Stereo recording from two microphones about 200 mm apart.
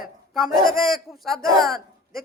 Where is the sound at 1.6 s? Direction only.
Centre (ahead or behind).